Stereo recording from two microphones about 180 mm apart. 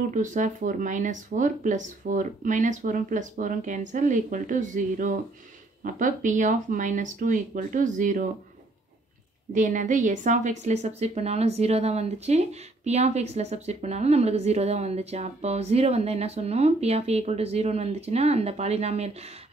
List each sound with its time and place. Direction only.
0.1 s speech: 45° right (ahead or behind)
9.5 s a woman's voice: 45° right (ahead or behind)